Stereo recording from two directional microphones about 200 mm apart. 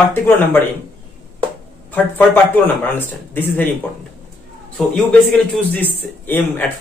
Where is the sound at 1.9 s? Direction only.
10° left (ahead or behind).